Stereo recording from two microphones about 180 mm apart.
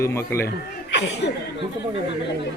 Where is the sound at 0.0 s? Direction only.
15° left (ahead or behind).